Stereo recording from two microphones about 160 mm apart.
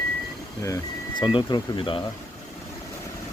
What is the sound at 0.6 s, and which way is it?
Speech, 25° left (ahead or behind).